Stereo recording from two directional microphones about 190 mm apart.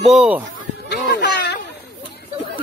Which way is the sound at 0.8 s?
60° left (ahead or behind).